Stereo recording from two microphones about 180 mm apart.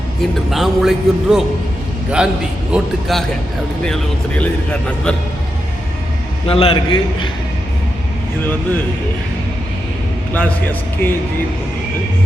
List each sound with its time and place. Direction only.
0.2 s a man's voice: centre (ahead or behind)
6.5 s a man's voice: 30° left (ahead or behind)
10.3 s speech: 10° left (ahead or behind)